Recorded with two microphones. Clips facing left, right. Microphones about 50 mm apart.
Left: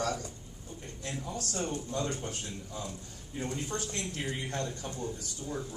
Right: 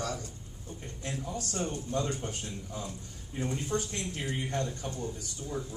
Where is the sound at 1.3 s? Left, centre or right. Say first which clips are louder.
Even; right.